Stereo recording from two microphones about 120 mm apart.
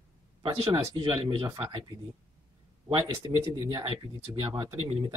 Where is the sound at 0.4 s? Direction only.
50° right (ahead or behind).